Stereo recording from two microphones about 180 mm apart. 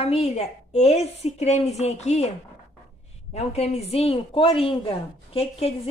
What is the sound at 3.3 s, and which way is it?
A woman's voice, 35° left (ahead or behind).